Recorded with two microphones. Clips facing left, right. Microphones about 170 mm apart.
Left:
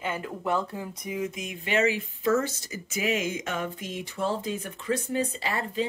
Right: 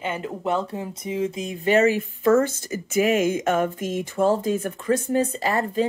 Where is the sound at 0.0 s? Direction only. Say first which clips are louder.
Right 4 dB; 20° right (ahead or behind).